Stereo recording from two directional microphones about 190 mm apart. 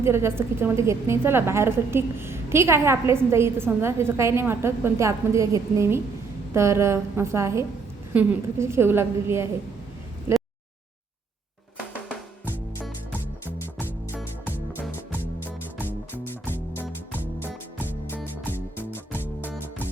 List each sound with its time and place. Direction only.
0.0 s a woman's voice: 15° right (ahead or behind)
10.3 s a sound: 15° right (ahead or behind)
12.0 s music: 5° left (ahead or behind)
15.8 s music: 10° right (ahead or behind)
16.3 s music: 10° left (ahead or behind)